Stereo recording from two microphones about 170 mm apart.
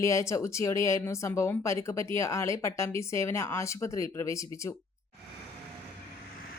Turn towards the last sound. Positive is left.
turn(degrees=20)  # may be behind; listen again after turning